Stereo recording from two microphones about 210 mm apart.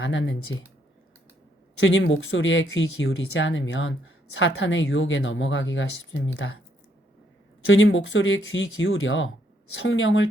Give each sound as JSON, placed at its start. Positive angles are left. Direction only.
{"t": 0.0, "sound": "speech", "side_deg": 60}
{"t": 1.8, "sound": "speech", "side_deg": 65}
{"t": 7.7, "sound": "speech", "side_deg": 65}